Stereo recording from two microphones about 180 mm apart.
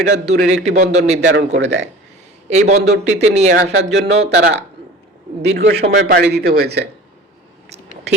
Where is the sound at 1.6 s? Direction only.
80° right.